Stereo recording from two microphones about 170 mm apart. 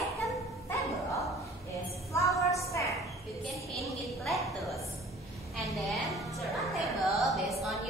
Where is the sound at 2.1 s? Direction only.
20° left (ahead or behind).